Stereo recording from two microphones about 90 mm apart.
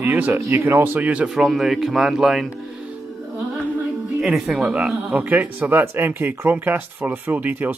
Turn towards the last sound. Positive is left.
turn(degrees=-20)  # may be behind; listen again after turning